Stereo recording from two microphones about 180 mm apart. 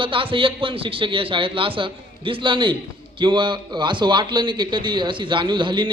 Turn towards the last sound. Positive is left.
turn(degrees=-25)  # may be behind; listen again after turning